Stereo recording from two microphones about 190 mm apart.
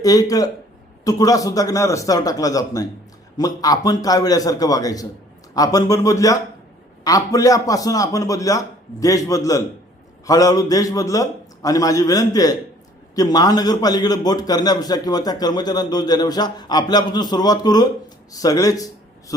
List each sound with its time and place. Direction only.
0.0 s a man's voice: 20° left (ahead or behind)